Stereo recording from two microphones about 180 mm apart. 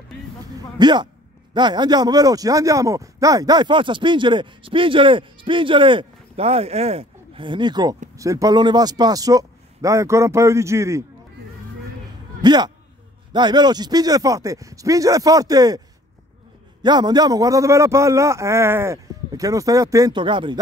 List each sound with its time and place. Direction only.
0.7 s speech: 25° right (ahead or behind)
12.4 s speech: 25° right (ahead or behind)
16.8 s speech: 25° right (ahead or behind)